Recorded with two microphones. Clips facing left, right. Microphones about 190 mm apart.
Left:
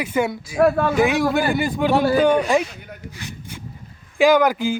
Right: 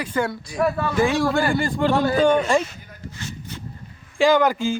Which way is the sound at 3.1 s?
15° left (ahead or behind).